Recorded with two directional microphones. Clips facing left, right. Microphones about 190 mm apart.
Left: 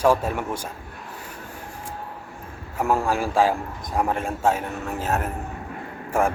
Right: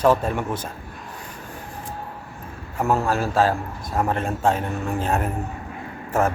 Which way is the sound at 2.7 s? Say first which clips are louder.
Right 1 dB; 10° left (ahead or behind).